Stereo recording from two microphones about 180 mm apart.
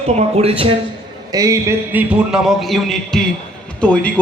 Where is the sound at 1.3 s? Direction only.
20° right (ahead or behind).